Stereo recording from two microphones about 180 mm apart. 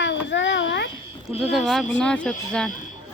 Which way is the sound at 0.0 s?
85° left.